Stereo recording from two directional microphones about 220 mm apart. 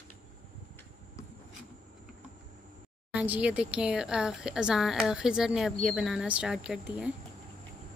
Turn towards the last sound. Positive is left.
turn(degrees=-5)  # may be behind; listen again after turning